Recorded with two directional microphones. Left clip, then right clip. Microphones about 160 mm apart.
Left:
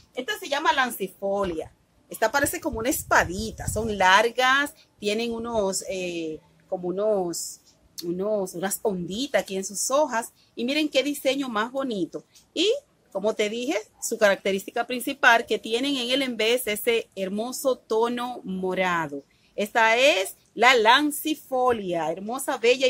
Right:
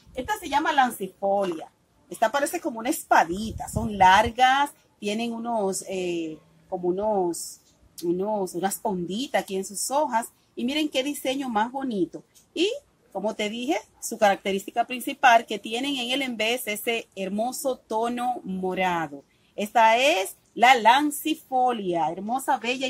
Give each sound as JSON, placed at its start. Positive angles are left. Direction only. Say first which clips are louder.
{"t": 0.4, "sound": "a woman's voice", "louder": "right 1 dB", "side_deg": 20}
{"t": 8.5, "sound": "a woman's voice", "louder": "even", "side_deg": 20}